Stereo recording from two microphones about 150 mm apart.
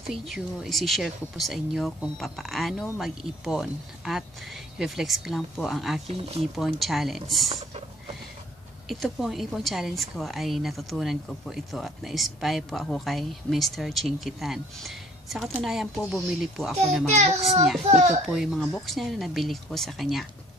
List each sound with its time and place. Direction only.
0.1 s a woman's voice: centre (ahead or behind)
6.0 s a child's voice: 45° right (ahead or behind)
6.5 s a woman's voice: centre (ahead or behind)
8.8 s a woman's voice: centre (ahead or behind)
17.1 s a child's voice: 45° right (ahead or behind)
18.3 s a woman's voice: centre (ahead or behind)